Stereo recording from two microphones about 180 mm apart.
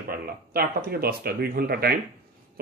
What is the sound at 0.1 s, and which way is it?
Speech, 55° right (ahead or behind).